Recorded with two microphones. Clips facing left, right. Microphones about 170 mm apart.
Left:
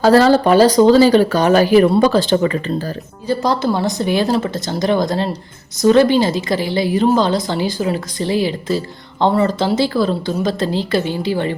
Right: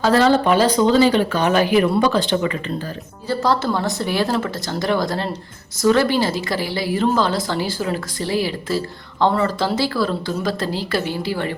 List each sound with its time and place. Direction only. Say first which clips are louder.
0.0 s speech: left 4 dB; 40° left (ahead or behind)
3.2 s a woman's voice: left 2 dB; 15° left (ahead or behind)